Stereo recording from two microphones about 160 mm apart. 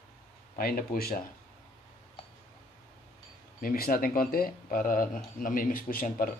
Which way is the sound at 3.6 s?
65° left (ahead or behind).